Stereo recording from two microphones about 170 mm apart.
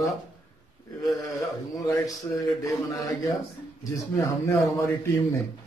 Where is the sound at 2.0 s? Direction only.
20° left (ahead or behind).